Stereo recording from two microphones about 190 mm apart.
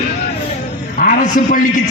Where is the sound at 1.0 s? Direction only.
45° left (ahead or behind).